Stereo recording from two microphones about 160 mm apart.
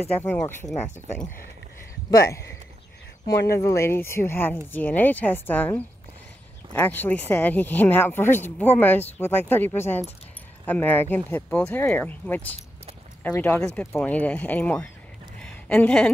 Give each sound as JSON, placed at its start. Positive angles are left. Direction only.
{"t": 0.1, "sound": "speech", "side_deg": 10}
{"t": 2.0, "sound": "speech", "side_deg": 20}
{"t": 3.5, "sound": "speech", "side_deg": 15}
{"t": 15.4, "sound": "a sound", "side_deg": 10}